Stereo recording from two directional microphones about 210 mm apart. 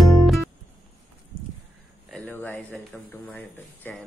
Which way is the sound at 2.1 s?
5° left (ahead or behind).